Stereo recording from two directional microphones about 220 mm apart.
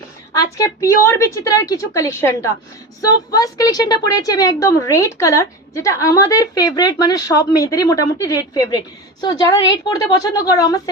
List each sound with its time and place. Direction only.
0.5 s a woman's voice: 15° left (ahead or behind)